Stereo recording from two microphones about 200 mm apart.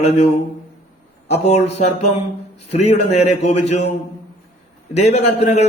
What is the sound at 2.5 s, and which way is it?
A man's voice, 30° left (ahead or behind).